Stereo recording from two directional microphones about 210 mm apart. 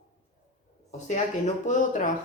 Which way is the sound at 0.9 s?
35° left (ahead or behind).